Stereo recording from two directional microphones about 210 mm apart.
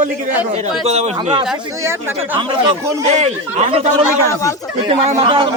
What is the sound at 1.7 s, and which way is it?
Speech, 15° right (ahead or behind).